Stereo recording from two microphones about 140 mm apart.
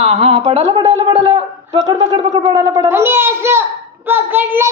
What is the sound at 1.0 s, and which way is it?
A child's voice, 35° right (ahead or behind).